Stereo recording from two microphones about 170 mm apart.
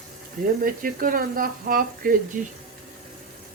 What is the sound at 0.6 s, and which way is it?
Speech, 55° right (ahead or behind).